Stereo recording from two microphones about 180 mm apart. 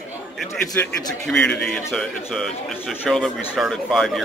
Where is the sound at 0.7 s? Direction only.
10° left (ahead or behind).